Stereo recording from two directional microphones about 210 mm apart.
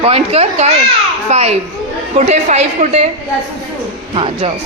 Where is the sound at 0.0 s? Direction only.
30° right (ahead or behind).